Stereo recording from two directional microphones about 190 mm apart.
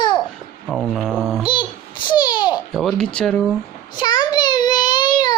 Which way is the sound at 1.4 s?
25° left (ahead or behind).